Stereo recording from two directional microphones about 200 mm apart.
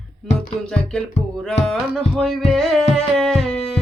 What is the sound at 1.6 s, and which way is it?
Music, centre (ahead or behind).